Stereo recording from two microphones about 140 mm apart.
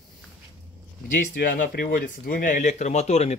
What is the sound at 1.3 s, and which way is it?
Speech, 80° left.